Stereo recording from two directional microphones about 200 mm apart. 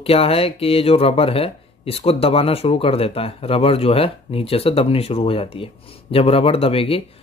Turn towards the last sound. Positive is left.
turn(degrees=30)  # may be behind; listen again after turning